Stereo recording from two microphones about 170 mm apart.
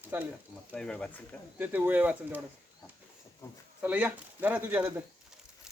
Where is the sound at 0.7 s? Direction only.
5° left (ahead or behind).